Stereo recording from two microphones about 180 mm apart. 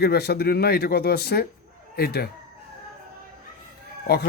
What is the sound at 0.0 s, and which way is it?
Speech, 60° left (ahead or behind).